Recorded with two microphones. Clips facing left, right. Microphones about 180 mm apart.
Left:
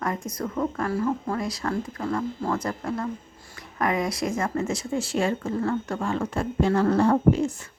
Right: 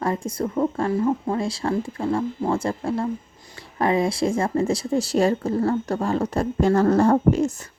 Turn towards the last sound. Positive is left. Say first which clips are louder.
# right 2 dB
turn(degrees=-40)  # may be behind; listen again after turning